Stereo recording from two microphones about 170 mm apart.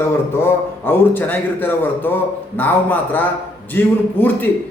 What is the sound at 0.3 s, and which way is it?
A man's voice, 15° left (ahead or behind).